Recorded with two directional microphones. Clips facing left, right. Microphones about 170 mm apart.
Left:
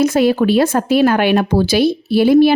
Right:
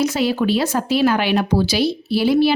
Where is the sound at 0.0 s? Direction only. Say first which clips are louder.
Left 6 dB; 50° left (ahead or behind).